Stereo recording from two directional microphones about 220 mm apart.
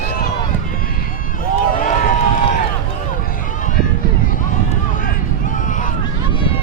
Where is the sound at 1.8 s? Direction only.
40° left (ahead or behind).